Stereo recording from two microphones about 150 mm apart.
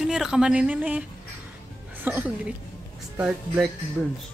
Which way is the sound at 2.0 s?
10° right (ahead or behind).